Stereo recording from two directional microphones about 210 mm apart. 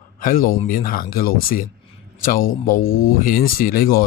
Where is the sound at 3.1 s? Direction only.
40° left (ahead or behind).